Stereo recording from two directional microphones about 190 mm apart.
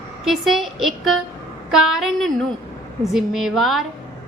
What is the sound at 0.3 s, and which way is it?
A woman's voice, centre (ahead or behind).